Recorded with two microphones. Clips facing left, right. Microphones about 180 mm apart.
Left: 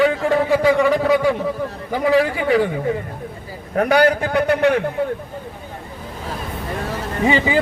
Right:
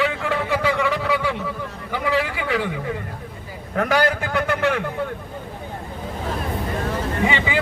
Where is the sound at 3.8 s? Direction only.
35° left (ahead or behind).